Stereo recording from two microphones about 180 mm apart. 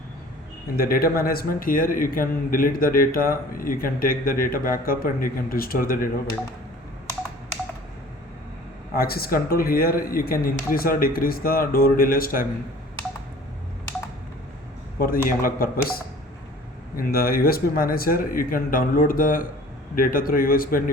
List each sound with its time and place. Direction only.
0.8 s a man's voice: 55° left (ahead or behind)
9.0 s a man's voice: 55° left (ahead or behind)
14.9 s a man's voice: 55° left (ahead or behind)
17.0 s a man's voice: 55° left (ahead or behind)